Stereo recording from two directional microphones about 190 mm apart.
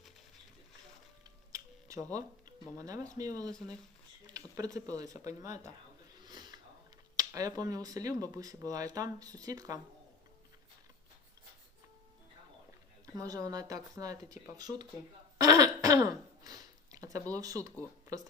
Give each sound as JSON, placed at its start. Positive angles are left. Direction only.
{"t": 1.5, "sound": "a sound", "side_deg": -15}
{"t": 2.7, "sound": "speech", "side_deg": -20}
{"t": 6.1, "sound": "a sound", "side_deg": -20}
{"t": 7.2, "sound": "speech", "side_deg": -20}
{"t": 13.1, "sound": "speech", "side_deg": -20}
{"t": 15.4, "sound": "throat clearing", "side_deg": -20}